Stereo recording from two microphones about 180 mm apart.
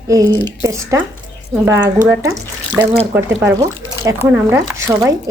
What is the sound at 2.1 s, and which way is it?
A woman's voice, 10° right (ahead or behind).